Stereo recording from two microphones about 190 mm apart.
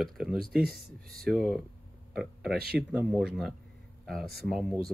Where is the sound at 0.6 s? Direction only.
50° right (ahead or behind).